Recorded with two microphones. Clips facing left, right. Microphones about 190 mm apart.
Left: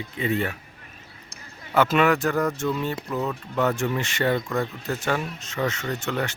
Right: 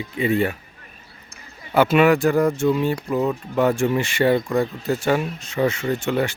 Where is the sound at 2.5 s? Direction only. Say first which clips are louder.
Right 6 dB; 25° right (ahead or behind).